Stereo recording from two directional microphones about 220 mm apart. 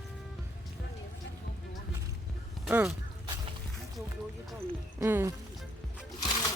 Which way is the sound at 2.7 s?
5° right (ahead or behind).